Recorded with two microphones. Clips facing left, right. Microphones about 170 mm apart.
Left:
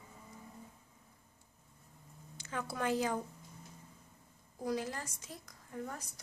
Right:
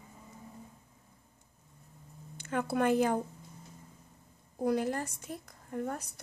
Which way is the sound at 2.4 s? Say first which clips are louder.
Right 8 dB; 60° right (ahead or behind).